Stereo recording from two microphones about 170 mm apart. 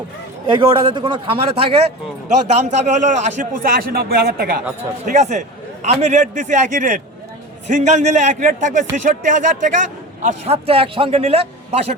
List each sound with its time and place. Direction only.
0.4 s a man's voice: 25° right (ahead or behind)
2.6 s a man's voice: 45° right (ahead or behind); by 4.6 s 60° right (ahead or behind)
4.8 s a man's voice: 45° right (ahead or behind)